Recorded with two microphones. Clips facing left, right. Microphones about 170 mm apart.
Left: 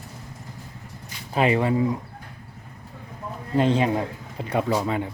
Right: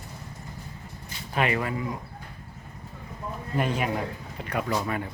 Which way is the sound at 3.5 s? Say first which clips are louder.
Left 7 dB; 25° left (ahead or behind).